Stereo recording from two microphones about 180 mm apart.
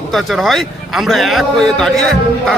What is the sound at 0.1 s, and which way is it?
A man's voice, centre (ahead or behind).